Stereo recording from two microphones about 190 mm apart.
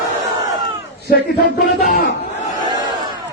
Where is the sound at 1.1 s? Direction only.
55° left (ahead or behind).